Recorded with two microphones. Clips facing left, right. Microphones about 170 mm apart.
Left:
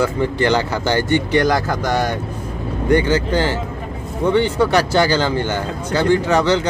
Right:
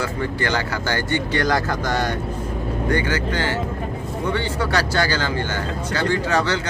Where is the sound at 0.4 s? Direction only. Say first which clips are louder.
Left 7 dB; 20° left (ahead or behind).